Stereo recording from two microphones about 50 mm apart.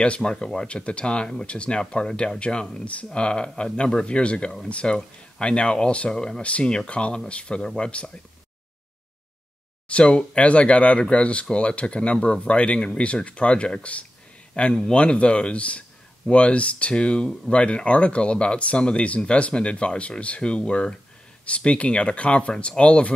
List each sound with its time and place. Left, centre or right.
0.0 s speech: centre
2.8 s speech: left
9.8 s speech: left